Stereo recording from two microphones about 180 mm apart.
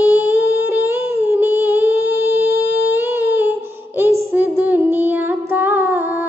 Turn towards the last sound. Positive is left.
turn(degrees=-10)  # may be behind; listen again after turning